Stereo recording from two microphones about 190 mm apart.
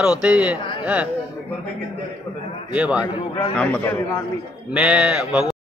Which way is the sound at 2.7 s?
5° right (ahead or behind).